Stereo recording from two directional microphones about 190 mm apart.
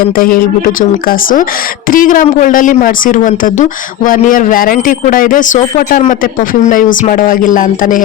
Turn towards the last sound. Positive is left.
turn(degrees=45)  # may be behind; listen again after turning